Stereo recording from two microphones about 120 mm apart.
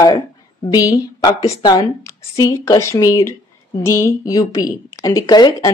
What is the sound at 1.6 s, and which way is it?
A woman's voice, 35° left (ahead or behind).